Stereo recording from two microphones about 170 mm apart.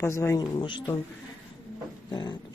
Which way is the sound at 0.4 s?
25° left (ahead or behind).